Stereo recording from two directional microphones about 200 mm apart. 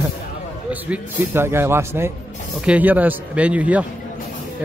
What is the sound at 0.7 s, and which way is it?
A man's voice, 10° right (ahead or behind).